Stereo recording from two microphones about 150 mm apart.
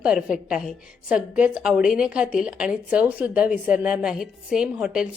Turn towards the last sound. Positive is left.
turn(degrees=-5)  # may be behind; listen again after turning